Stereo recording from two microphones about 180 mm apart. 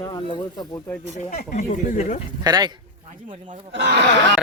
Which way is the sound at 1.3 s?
45° left (ahead or behind).